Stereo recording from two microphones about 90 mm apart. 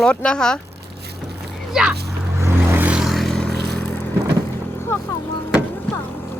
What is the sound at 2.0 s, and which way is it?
Vehicle, 35° right (ahead or behind).